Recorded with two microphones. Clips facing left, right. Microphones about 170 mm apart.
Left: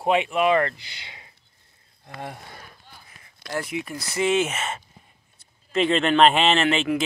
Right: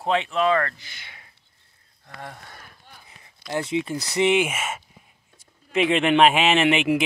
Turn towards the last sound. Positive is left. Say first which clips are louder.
# right 2 dB
turn(degrees=-15)  # may be behind; listen again after turning